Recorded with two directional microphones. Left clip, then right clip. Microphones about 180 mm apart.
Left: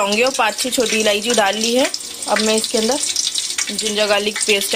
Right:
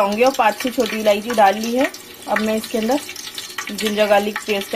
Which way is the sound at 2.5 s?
5° right (ahead or behind).